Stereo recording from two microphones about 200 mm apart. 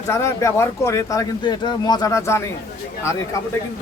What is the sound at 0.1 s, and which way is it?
Speech, 15° left (ahead or behind).